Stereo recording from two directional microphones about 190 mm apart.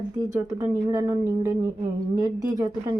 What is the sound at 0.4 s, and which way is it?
Speech, 15° right (ahead or behind).